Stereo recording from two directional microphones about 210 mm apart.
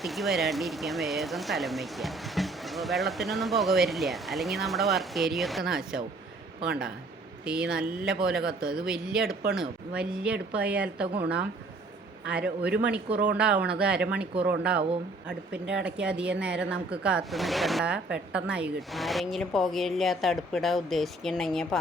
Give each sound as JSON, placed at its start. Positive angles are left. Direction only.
{"t": 0.0, "sound": "speech", "side_deg": 0}
{"t": 7.4, "sound": "speech", "side_deg": -5}
{"t": 12.3, "sound": "a man's voice", "side_deg": -5}
{"t": 13.1, "sound": "speech", "side_deg": -45}
{"t": 13.4, "sound": "speech", "side_deg": -5}